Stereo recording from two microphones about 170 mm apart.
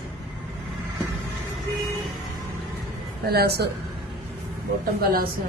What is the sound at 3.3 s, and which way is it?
Speech, 70° right (ahead or behind).